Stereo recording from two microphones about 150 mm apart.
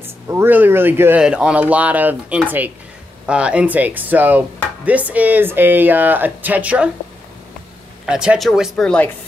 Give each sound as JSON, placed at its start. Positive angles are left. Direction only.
{"t": 0.0, "sound": "speech", "side_deg": -15}
{"t": 8.1, "sound": "speech", "side_deg": -5}